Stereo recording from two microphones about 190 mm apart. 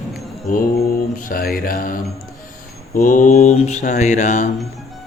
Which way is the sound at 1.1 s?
50° left (ahead or behind).